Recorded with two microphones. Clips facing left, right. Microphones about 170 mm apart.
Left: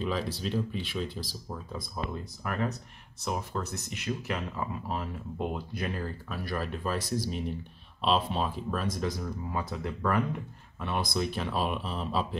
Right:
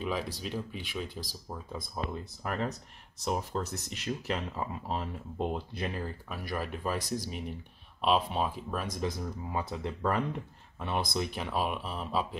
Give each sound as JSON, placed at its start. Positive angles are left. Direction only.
{"t": 0.0, "sound": "speech", "side_deg": -10}
{"t": 2.4, "sound": "speech", "side_deg": -30}
{"t": 6.2, "sound": "speech", "side_deg": -15}